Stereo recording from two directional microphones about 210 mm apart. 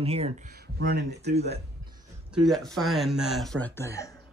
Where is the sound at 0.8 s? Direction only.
50° right (ahead or behind).